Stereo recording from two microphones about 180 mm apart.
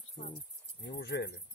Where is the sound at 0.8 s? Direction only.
70° left (ahead or behind).